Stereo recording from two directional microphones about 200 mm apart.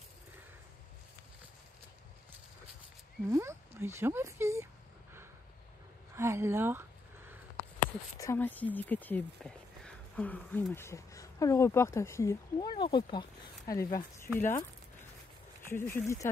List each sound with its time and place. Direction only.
3.3 s speech: 15° right (ahead or behind)
6.1 s a sound: 15° right (ahead or behind)
8.2 s speech: 10° left (ahead or behind)
15.6 s speech: 10° left (ahead or behind)